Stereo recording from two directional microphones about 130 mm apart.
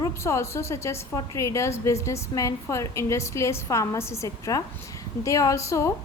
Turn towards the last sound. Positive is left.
turn(degrees=20)  # may be behind; listen again after turning